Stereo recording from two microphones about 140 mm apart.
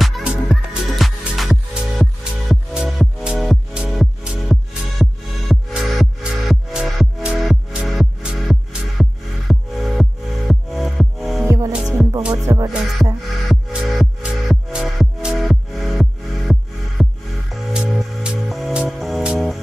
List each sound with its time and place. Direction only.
0.0 s music: centre (ahead or behind)
11.4 s music: 20° right (ahead or behind)
11.7 s music: 5° right (ahead or behind)
12.4 s music: 25° right (ahead or behind)
13.5 s music: centre (ahead or behind)